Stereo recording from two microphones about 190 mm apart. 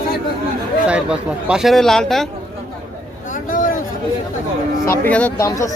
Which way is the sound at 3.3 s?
45° left (ahead or behind).